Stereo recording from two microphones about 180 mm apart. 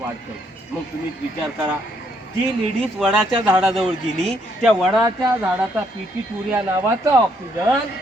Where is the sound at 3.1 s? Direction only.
5° right (ahead or behind).